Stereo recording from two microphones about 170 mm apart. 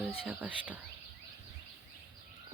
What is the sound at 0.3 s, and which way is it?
Speech, 5° right (ahead or behind).